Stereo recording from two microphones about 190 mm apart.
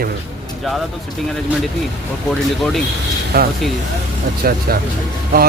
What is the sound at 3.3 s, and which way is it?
A man's voice, 55° right (ahead or behind).